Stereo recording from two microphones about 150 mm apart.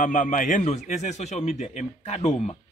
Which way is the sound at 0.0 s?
60° left (ahead or behind).